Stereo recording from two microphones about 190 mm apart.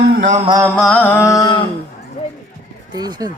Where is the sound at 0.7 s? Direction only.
5° left (ahead or behind).